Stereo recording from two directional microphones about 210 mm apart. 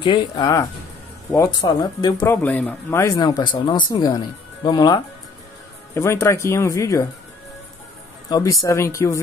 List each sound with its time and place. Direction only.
0.0 s speech: 20° left (ahead or behind)
8.3 s speech: 15° left (ahead or behind)